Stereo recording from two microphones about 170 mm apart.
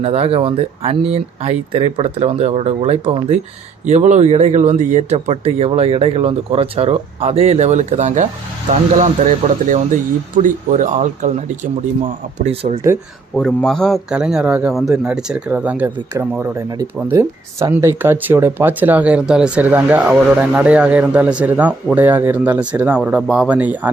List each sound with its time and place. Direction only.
0.0 s speech: 35° right (ahead or behind)
13.3 s a man's voice: centre (ahead or behind)